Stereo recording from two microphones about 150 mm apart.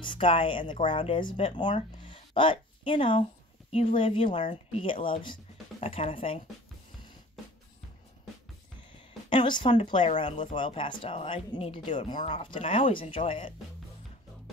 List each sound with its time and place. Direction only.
0.0 s a woman's voice: 35° left (ahead or behind)
9.3 s speech: 30° left (ahead or behind)